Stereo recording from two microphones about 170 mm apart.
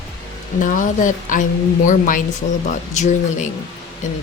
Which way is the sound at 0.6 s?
50° left (ahead or behind).